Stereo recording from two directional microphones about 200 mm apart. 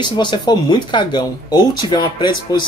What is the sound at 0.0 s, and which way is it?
Speech, 25° left (ahead or behind).